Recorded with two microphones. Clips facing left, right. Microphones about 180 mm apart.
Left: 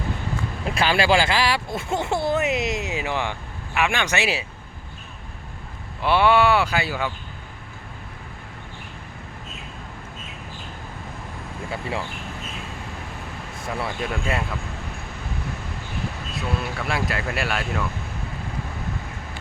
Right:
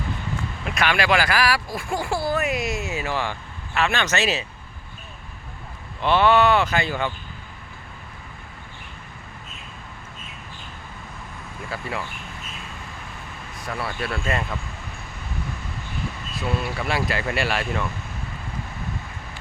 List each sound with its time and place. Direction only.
0.6 s speech: 30° left (ahead or behind); by 4.4 s 15° left (ahead or behind)
6.0 s speech: 10° left (ahead or behind)
11.7 s speech: 25° left (ahead or behind)
13.6 s speech: 25° left (ahead or behind)
16.3 s speech: centre (ahead or behind)